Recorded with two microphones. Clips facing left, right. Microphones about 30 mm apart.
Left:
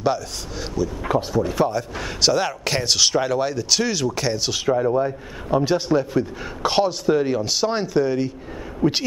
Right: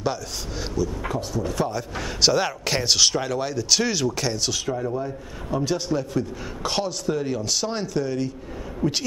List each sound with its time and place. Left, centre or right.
0.0 s speech: centre
4.5 s a man's voice: left